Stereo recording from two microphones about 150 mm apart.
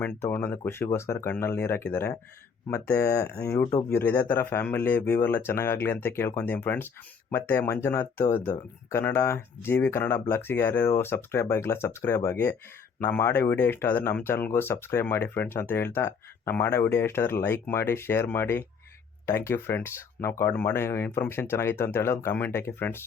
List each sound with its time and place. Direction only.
0.0 s speech: 15° left (ahead or behind)